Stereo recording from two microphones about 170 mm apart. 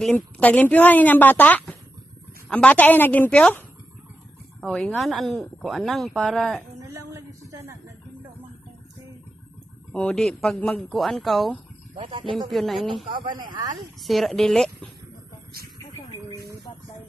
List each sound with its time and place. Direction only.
0.0 s a woman's voice: 5° left (ahead or behind)
6.9 s a woman's voice: 20° right (ahead or behind)
9.9 s speech: 5° left (ahead or behind)
12.1 s speech: 30° right (ahead or behind)
12.4 s speech: centre (ahead or behind)
12.9 s speech: 30° right (ahead or behind)
13.7 s speech: centre (ahead or behind)